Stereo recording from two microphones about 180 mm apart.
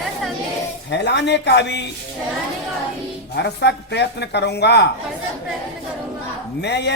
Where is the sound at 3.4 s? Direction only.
70° left (ahead or behind).